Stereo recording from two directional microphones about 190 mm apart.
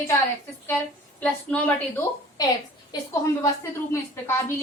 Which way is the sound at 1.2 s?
10° left (ahead or behind).